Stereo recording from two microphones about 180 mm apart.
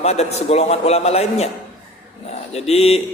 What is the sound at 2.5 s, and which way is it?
Speech, 35° left (ahead or behind).